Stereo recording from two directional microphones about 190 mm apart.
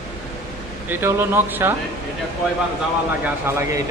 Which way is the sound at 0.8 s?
10° right (ahead or behind).